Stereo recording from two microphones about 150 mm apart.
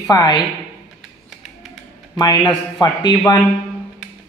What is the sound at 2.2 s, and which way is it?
Speech, 30° left (ahead or behind).